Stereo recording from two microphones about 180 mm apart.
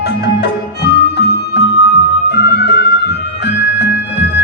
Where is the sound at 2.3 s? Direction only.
70° left (ahead or behind).